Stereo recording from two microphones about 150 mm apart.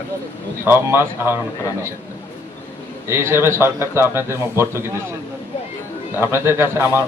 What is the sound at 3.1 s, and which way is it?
A man's voice, 15° right (ahead or behind).